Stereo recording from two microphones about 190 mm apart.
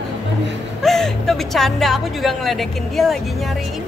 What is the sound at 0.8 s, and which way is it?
Speech, centre (ahead or behind).